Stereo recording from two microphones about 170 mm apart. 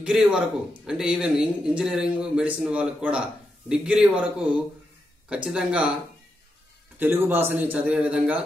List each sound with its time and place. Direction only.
0.0 s a man's voice: 5° right (ahead or behind)
7.0 s speech: 10° right (ahead or behind)